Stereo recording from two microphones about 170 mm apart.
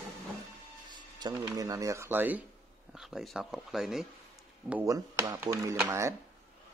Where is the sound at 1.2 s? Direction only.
20° right (ahead or behind); by 4.0 s centre (ahead or behind).